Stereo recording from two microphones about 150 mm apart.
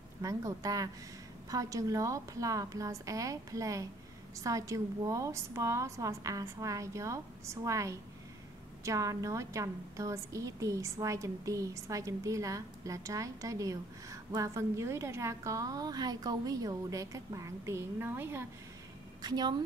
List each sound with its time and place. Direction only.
0.2 s a woman's voice: 20° right (ahead or behind)
19.2 s a woman's voice: 30° right (ahead or behind)